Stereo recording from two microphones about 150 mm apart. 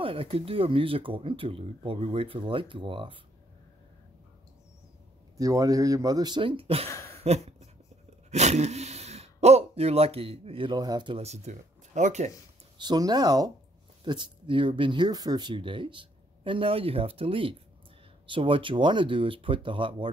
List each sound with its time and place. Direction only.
0.0 s speech: 40° right (ahead or behind)
5.4 s speech: 25° right (ahead or behind); by 6.9 s 40° right (ahead or behind)
7.2 s a sound: 45° right (ahead or behind)
8.3 s speech: 50° right (ahead or behind); by 11.2 s 30° right (ahead or behind)
11.2 s speech: 50° right (ahead or behind)
12.7 s speech: 30° right (ahead or behind)